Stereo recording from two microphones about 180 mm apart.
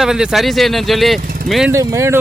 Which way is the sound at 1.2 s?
55° right (ahead or behind).